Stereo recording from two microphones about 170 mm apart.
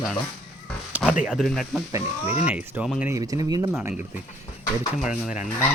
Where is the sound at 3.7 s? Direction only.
10° right (ahead or behind).